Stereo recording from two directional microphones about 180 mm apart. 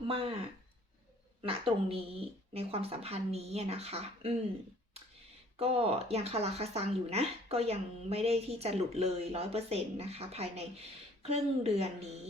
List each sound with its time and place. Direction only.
0.1 s speech: 30° right (ahead or behind)
1.4 s speech: 30° right (ahead or behind)
5.5 s speech: 35° right (ahead or behind)